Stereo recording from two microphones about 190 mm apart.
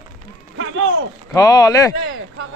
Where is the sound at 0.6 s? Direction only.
90° right.